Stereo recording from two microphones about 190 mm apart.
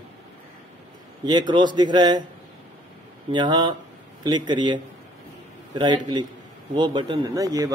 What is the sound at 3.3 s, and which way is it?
A man's voice, 25° right (ahead or behind).